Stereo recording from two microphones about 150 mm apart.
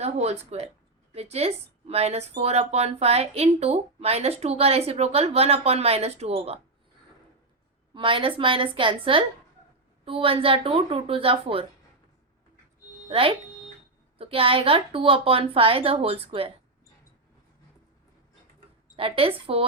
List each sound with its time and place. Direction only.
0.0 s a woman's voice: 45° right (ahead or behind)
7.9 s a woman's voice: 35° right (ahead or behind)
13.1 s a woman's voice: 40° right (ahead or behind)
18.9 s a woman's voice: 40° right (ahead or behind)